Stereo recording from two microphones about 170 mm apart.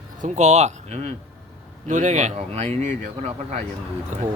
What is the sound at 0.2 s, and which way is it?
Speech, 45° right (ahead or behind).